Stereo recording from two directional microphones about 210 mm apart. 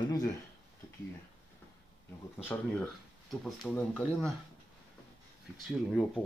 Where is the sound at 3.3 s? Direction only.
Centre (ahead or behind).